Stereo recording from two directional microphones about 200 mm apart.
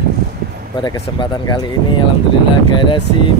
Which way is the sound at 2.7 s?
25° left (ahead or behind).